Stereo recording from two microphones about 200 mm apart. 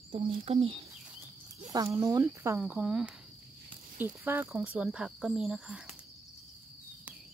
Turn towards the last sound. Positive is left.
turn(degrees=-5)  # may be behind; listen again after turning